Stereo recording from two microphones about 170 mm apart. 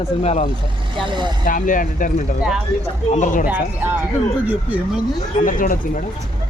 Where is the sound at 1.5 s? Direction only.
50° left (ahead or behind).